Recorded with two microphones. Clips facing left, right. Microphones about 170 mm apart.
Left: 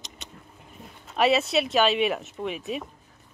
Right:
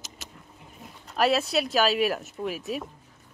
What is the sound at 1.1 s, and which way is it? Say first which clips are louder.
Speech: left 2 dB; centre (ahead or behind).